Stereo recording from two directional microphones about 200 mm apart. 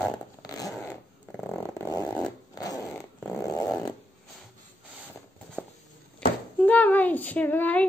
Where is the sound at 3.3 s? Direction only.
15° left (ahead or behind).